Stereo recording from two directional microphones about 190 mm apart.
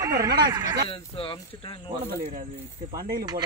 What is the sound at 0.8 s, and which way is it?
Speech, 30° left (ahead or behind).